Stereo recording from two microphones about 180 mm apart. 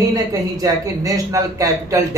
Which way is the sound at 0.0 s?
20° right (ahead or behind).